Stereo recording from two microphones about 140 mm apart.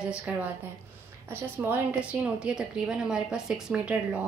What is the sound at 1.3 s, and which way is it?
A woman's voice, 15° right (ahead or behind).